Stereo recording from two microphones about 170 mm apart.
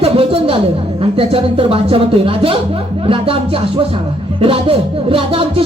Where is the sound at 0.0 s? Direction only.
35° right (ahead or behind).